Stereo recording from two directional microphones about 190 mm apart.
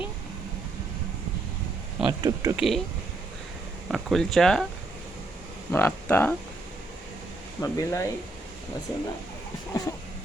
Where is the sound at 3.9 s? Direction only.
Centre (ahead or behind).